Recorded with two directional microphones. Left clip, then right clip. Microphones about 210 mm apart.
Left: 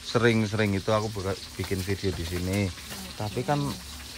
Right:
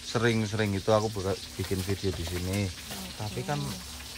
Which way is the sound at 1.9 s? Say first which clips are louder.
Left 2 dB; 10° right (ahead or behind).